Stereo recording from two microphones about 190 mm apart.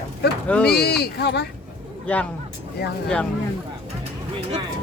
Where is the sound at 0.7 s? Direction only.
60° left (ahead or behind).